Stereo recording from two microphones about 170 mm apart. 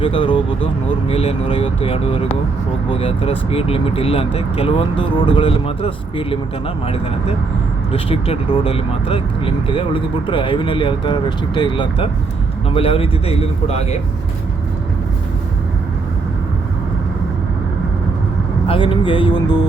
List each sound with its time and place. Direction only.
0.0 s speech: 30° left (ahead or behind)
7.9 s speech: 35° left (ahead or behind)
18.7 s speech: 30° left (ahead or behind)